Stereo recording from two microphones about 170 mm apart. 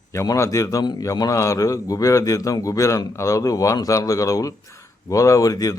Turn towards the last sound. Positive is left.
turn(degrees=20)  # may be behind; listen again after turning